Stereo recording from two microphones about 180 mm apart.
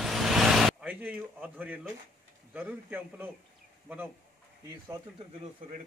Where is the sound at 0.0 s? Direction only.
Centre (ahead or behind).